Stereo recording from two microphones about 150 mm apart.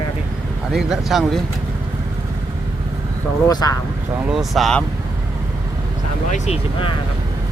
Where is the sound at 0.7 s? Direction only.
Centre (ahead or behind).